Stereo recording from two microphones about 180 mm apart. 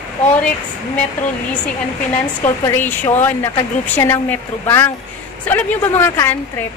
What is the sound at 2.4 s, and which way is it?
Speech, 10° left (ahead or behind).